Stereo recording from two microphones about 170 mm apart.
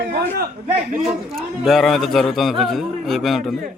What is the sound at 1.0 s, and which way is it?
Speech, centre (ahead or behind).